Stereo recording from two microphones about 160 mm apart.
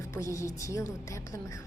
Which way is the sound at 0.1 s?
20° left (ahead or behind).